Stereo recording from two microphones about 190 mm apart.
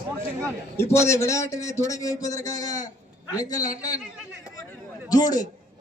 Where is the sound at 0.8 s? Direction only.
15° left (ahead or behind).